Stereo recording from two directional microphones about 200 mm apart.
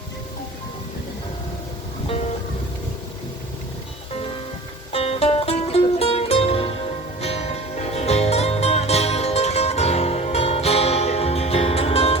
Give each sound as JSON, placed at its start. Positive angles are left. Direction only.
{"t": 4.9, "sound": "music", "side_deg": 30}